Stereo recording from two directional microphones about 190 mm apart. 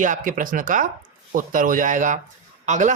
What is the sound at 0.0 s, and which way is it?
Speech, 45° right (ahead or behind).